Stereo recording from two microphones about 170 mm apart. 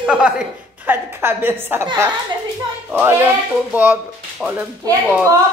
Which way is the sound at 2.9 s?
10° right (ahead or behind).